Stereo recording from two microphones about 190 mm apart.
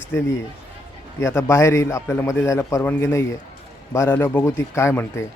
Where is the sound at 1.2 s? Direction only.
15° left (ahead or behind).